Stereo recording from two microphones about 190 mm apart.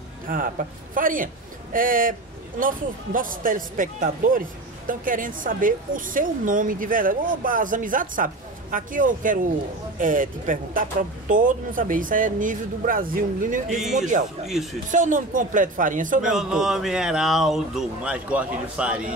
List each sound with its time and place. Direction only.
0.3 s speech: 45° right (ahead or behind)
14.4 s speech: centre (ahead or behind)
14.9 s speech: 45° right (ahead or behind)
16.3 s speech: 5° right (ahead or behind)